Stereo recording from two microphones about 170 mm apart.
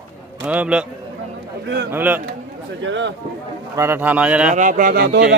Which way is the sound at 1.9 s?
10° right (ahead or behind).